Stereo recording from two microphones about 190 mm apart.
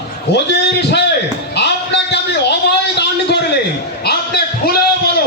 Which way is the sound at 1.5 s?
65° left (ahead or behind).